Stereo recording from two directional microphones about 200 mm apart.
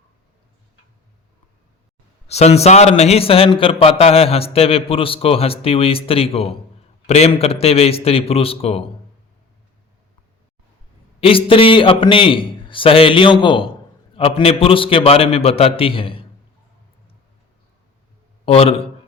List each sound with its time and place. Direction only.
2.2 s a man's voice: 30° left (ahead or behind)
11.2 s a man's voice: 25° left (ahead or behind)
18.4 s a man's voice: 30° left (ahead or behind)